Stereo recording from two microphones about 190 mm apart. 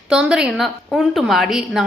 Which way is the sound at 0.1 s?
5° right (ahead or behind).